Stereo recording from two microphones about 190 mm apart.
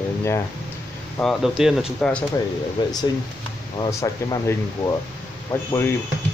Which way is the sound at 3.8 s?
15° left (ahead or behind).